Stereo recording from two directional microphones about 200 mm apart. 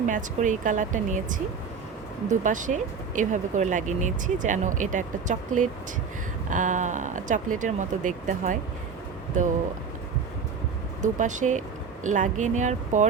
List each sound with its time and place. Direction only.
0.0 s speech: 40° right (ahead or behind)
11.0 s speech: 40° right (ahead or behind)